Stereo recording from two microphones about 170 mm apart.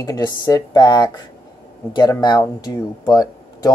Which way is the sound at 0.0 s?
20° left (ahead or behind).